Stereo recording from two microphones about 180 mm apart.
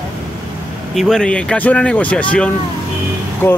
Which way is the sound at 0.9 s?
5° left (ahead or behind).